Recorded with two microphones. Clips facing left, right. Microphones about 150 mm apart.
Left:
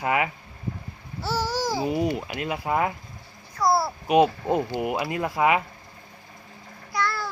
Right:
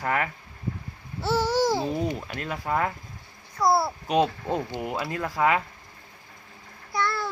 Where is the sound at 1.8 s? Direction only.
10° left (ahead or behind).